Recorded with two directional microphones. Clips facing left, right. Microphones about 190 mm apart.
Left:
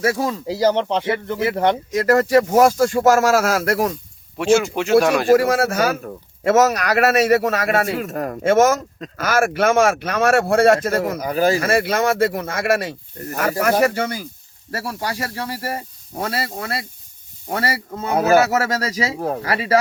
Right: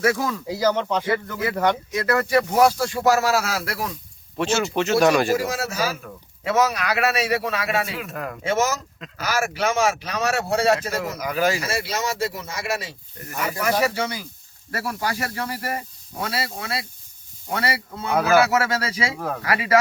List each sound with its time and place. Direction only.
0.0 s speech: 30° left (ahead or behind); by 3.9 s 45° left (ahead or behind)
4.4 s speech: 10° left (ahead or behind)
5.3 s speech: 60° left (ahead or behind)
6.0 s a man's voice: 45° left (ahead or behind)
11.2 s speech: 35° left (ahead or behind)
11.6 s a man's voice: 55° left (ahead or behind)
14.7 s speech: 30° left (ahead or behind)